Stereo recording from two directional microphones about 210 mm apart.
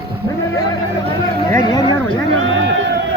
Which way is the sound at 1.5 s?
15° left (ahead or behind).